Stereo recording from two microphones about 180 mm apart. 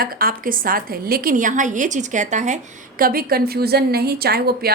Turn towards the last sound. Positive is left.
turn(degrees=-60)  # may be behind; listen again after turning